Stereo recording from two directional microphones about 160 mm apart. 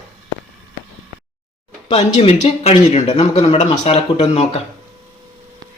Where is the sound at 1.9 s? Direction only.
40° left (ahead or behind).